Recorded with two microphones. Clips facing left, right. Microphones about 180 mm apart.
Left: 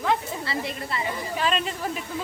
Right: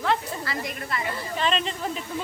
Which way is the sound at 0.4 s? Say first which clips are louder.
Left 2 dB; 30° left (ahead or behind).